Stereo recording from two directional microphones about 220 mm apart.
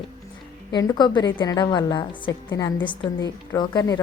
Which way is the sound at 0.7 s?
20° left (ahead or behind).